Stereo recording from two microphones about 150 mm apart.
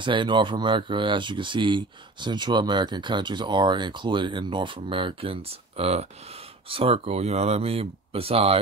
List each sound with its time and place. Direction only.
0.0 s speech: 30° right (ahead or behind)